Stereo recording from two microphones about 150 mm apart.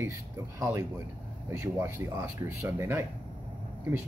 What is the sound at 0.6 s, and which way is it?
Speech, 15° right (ahead or behind).